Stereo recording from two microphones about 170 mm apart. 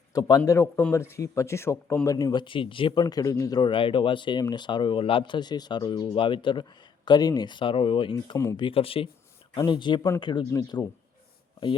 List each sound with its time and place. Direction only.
0.1 s speech: 20° left (ahead or behind)